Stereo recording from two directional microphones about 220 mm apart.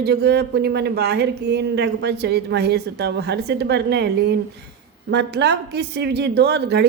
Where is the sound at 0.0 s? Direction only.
50° right (ahead or behind).